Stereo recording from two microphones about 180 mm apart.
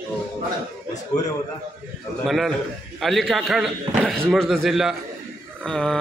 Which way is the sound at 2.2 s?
Centre (ahead or behind).